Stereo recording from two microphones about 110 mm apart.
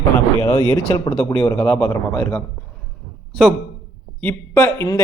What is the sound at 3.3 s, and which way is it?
Speech, 5° left (ahead or behind).